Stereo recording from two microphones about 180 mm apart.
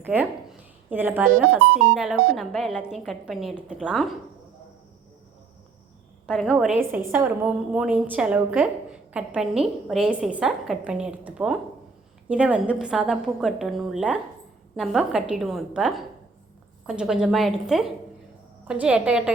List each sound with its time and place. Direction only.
0.0 s a woman's voice: 10° right (ahead or behind)
6.2 s a woman's voice: 5° right (ahead or behind)